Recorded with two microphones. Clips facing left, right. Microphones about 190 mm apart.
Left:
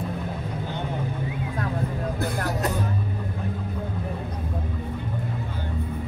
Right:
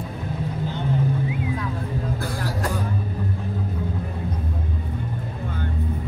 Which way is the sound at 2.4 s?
20° left (ahead or behind).